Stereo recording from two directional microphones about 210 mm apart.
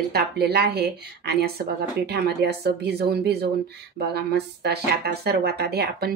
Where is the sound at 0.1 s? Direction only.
50° right (ahead or behind).